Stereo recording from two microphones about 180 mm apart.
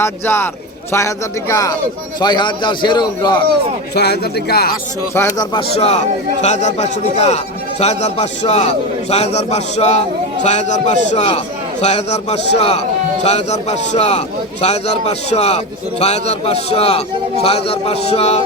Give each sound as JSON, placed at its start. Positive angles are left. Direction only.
{"t": 0.0, "sound": "a man's voice", "side_deg": 15}
{"t": 3.9, "sound": "speech", "side_deg": 65}
{"t": 5.1, "sound": "speech", "side_deg": 15}
{"t": 5.5, "sound": "a man's voice", "side_deg": 35}